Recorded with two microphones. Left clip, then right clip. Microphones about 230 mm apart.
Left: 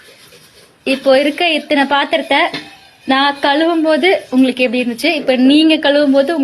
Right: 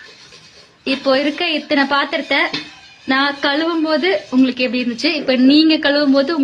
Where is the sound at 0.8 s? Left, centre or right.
Centre.